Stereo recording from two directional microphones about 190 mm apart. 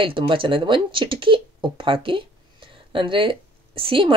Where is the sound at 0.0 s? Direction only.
25° right (ahead or behind).